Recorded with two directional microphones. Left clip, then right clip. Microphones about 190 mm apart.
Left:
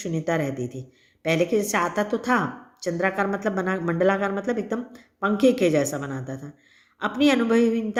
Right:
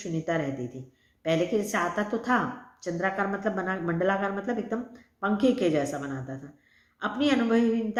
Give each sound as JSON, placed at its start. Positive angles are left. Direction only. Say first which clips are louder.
{"t": 0.0, "sound": "speech", "louder": "left 4 dB", "side_deg": 45}